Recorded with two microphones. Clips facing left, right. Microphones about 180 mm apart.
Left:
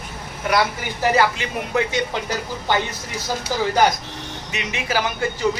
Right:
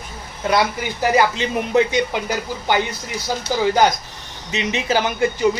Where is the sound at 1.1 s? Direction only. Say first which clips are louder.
Right 3 dB; 20° right (ahead or behind).